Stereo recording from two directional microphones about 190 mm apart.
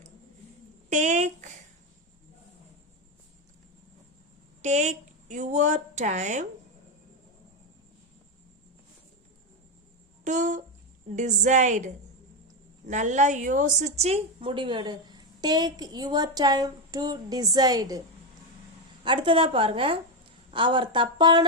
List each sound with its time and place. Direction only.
0.9 s a sound: 40° right (ahead or behind)
4.6 s speech: 40° right (ahead or behind)
10.2 s a woman's voice: 40° right (ahead or behind); by 18.0 s 20° right (ahead or behind)
19.0 s a woman's voice: 25° right (ahead or behind)